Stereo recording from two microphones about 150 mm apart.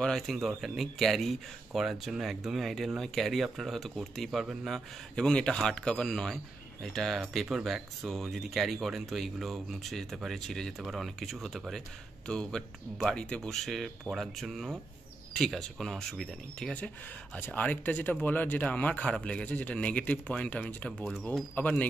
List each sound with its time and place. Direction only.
0.0 s a man's voice: centre (ahead or behind)